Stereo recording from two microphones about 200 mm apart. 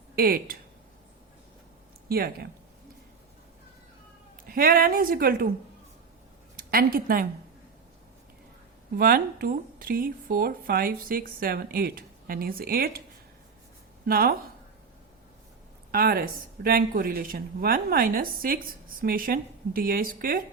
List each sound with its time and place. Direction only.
0.2 s speech: 50° right (ahead or behind)
2.0 s speech: 50° right (ahead or behind)
4.4 s speech: 45° right (ahead or behind)
6.7 s speech: 45° right (ahead or behind)
9.0 s speech: 45° right (ahead or behind)
14.1 s speech: 50° right (ahead or behind)
15.9 s speech: 50° right (ahead or behind)